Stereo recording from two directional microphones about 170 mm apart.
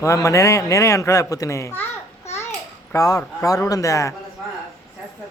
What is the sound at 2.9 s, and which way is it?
Speech, 20° left (ahead or behind).